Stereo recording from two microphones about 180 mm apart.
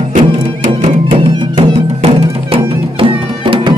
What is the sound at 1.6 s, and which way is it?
Music, 30° right (ahead or behind).